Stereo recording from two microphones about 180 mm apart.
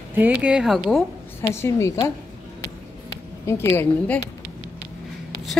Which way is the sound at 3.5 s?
15° left (ahead or behind).